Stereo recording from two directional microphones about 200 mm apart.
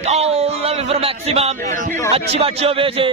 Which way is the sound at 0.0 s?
30° right (ahead or behind).